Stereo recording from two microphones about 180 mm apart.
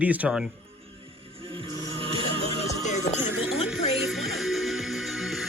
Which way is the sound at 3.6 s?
Centre (ahead or behind).